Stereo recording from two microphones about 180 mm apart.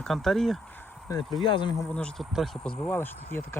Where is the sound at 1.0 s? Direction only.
25° left (ahead or behind).